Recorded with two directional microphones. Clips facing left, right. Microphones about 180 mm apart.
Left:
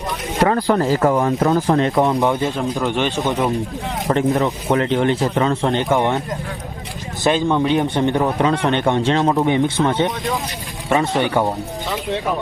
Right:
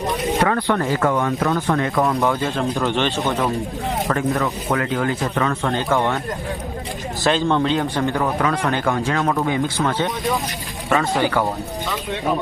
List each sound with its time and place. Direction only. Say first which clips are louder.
0.4 s speech: left 7 dB; 30° left (ahead or behind)
7.3 s speech: left 2 dB; 15° left (ahead or behind)
10.8 s speech: left 1 dB; 20° left (ahead or behind)